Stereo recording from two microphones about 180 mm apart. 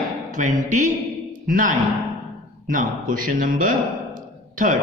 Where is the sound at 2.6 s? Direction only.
50° right (ahead or behind).